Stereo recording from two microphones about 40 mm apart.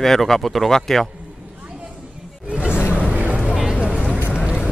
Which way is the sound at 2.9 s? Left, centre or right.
Right.